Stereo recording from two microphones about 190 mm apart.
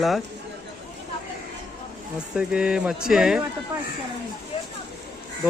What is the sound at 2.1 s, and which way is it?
Speech, 5° right (ahead or behind).